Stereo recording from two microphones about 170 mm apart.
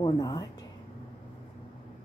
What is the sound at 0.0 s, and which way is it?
Speech, 25° left (ahead or behind).